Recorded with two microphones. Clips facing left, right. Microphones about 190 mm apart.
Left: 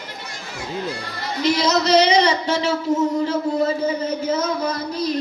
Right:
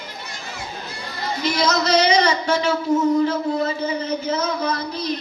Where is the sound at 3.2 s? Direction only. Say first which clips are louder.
Even; 45° left (ahead or behind).